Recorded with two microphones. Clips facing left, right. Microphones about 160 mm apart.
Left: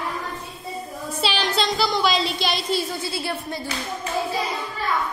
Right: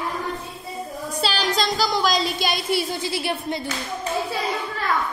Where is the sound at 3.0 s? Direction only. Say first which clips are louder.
Right 2 dB; 15° right (ahead or behind).